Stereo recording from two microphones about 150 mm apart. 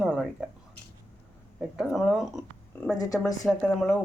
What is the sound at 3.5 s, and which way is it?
Speech, 5° left (ahead or behind).